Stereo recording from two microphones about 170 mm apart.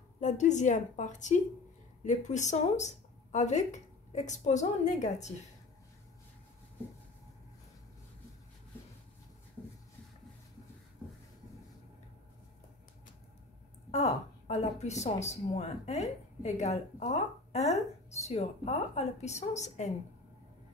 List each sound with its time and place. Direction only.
0.2 s speech: 45° left (ahead or behind)
13.9 s a woman's voice: 40° left (ahead or behind)